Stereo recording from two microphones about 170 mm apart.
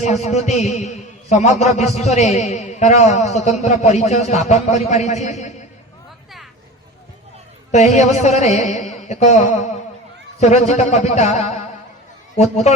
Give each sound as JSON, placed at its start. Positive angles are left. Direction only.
{"t": 0.0, "sound": "a man's voice", "side_deg": 40}
{"t": 7.7, "sound": "a man's voice", "side_deg": 40}